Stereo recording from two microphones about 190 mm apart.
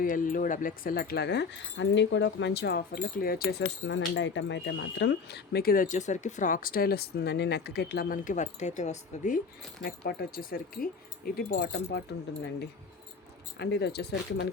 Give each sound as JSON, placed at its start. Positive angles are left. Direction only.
{"t": 0.0, "sound": "speech", "side_deg": 45}
{"t": 3.9, "sound": "speech", "side_deg": 75}
{"t": 9.8, "sound": "speech", "side_deg": 50}
{"t": 13.6, "sound": "speech", "side_deg": 60}